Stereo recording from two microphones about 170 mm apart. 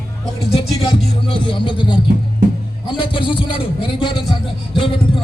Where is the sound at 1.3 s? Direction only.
30° left (ahead or behind).